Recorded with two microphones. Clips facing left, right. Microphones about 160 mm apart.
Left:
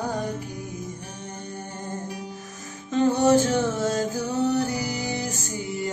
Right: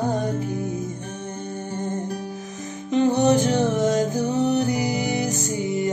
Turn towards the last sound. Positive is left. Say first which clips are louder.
# right 6 dB
turn(degrees=-20)  # may be behind; listen again after turning